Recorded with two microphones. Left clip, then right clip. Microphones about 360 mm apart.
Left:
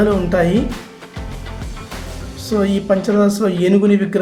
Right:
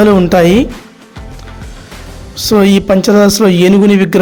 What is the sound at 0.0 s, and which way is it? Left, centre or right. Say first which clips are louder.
Speech: right 8 dB; right.